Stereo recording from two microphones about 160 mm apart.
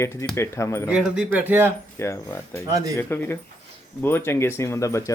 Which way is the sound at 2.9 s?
15° left (ahead or behind).